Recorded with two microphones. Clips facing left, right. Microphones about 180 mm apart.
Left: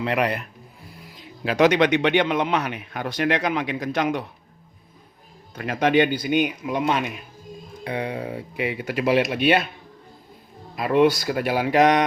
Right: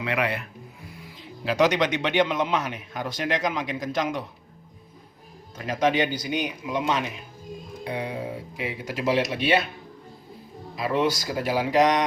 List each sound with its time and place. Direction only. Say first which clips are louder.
1.5 s a man's voice: left 4 dB; 60° left (ahead or behind)
5.5 s a man's voice: left 4 dB; 60° left (ahead or behind)
10.8 s a man's voice: left 6 dB; 60° left (ahead or behind)